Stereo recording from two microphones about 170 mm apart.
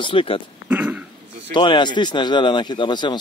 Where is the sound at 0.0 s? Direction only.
30° left (ahead or behind).